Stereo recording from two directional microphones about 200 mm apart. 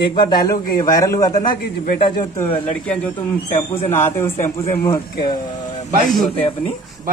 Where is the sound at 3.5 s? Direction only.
35° left (ahead or behind).